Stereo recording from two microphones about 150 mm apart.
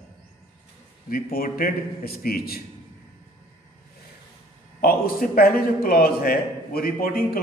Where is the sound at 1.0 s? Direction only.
70° left (ahead or behind); by 2.6 s 90° left.